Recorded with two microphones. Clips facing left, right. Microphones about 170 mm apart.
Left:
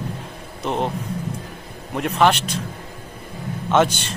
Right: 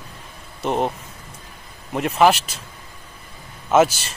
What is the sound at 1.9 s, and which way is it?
Speech, centre (ahead or behind).